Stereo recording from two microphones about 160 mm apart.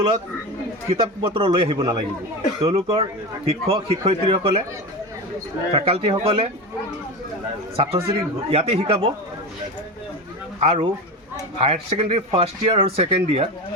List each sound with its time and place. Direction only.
0.9 s speech: 35° right (ahead or behind)
5.7 s speech: 35° right (ahead or behind)
7.8 s speech: 35° right (ahead or behind)
10.6 s speech: 40° right (ahead or behind)